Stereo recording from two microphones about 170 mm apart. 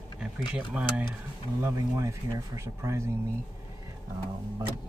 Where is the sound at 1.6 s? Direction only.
20° right (ahead or behind).